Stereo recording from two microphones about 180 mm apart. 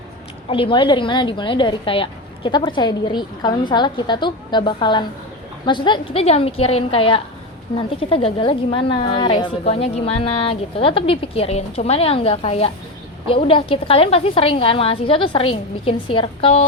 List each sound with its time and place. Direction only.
0.4 s a woman's voice: 30° left (ahead or behind)